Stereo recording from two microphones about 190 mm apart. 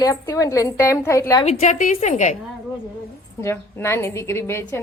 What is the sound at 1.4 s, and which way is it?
Speech, 35° left (ahead or behind).